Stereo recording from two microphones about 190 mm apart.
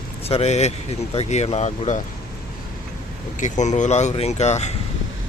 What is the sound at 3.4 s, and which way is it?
Speech, 40° left (ahead or behind).